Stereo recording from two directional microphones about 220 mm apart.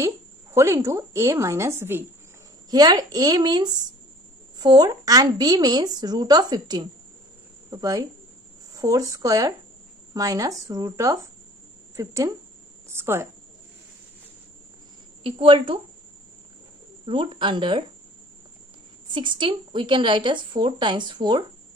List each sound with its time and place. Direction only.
0.0 s speech: 10° right (ahead or behind)
15.2 s a woman's voice: 25° right (ahead or behind)
17.0 s a woman's voice: 25° right (ahead or behind)
19.1 s a woman's voice: 20° right (ahead or behind)